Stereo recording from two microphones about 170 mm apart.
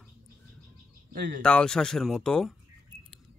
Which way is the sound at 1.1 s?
85° right.